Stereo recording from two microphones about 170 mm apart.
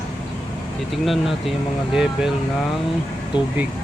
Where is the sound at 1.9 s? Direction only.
5° right (ahead or behind).